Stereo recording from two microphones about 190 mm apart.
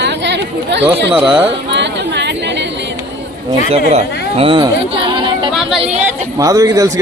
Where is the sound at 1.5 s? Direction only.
70° right (ahead or behind).